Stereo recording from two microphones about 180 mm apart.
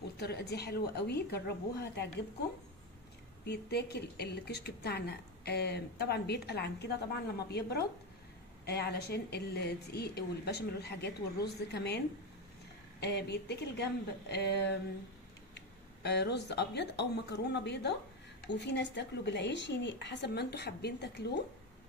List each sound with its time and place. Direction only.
0.2 s a woman's voice: 65° left (ahead or behind)
3.4 s a woman's voice: 65° left (ahead or behind)
13.0 s a woman's voice: 65° left (ahead or behind)